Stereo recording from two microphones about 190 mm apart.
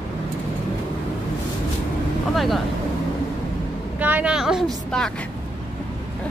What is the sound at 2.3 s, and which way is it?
Speech, centre (ahead or behind).